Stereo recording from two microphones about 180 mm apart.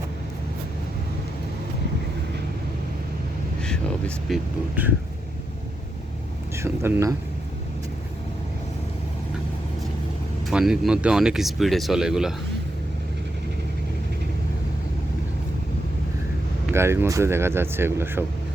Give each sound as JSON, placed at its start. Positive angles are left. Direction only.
{"t": 3.6, "sound": "a sound", "side_deg": 5}
{"t": 6.6, "sound": "speech", "side_deg": -15}
{"t": 10.4, "sound": "speech", "side_deg": -5}
{"t": 16.7, "sound": "speech", "side_deg": -15}